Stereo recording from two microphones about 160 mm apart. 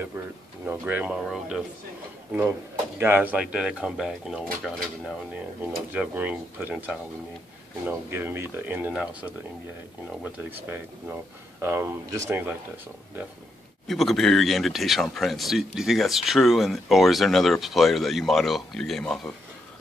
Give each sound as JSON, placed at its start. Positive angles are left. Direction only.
{"t": 0.7, "sound": "speech", "side_deg": -10}
{"t": 3.0, "sound": "speech", "side_deg": -10}
{"t": 8.1, "sound": "speech", "side_deg": -15}
{"t": 13.8, "sound": "speech", "side_deg": 0}